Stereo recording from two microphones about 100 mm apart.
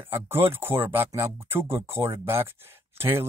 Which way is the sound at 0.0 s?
20° right (ahead or behind).